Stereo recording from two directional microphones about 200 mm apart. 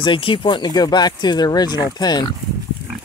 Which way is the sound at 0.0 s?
25° left (ahead or behind).